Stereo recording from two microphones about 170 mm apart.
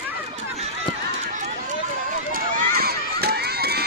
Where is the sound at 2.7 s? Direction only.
65° right (ahead or behind).